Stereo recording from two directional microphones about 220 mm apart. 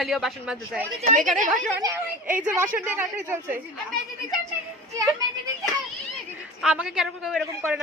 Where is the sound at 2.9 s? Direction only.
10° right (ahead or behind).